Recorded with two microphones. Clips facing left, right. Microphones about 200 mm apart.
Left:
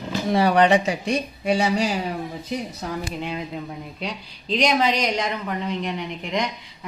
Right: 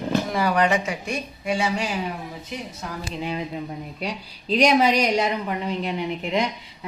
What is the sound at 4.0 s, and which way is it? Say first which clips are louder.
A woman's voice: right 1 dB; 10° right (ahead or behind).